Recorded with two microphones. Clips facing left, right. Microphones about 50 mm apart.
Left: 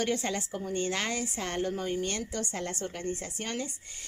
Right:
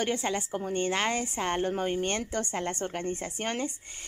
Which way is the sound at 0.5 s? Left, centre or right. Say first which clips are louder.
Right 3 dB; right.